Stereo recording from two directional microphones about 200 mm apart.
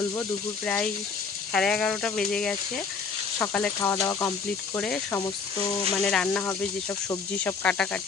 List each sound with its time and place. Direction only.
0.2 s speech: 5° left (ahead or behind)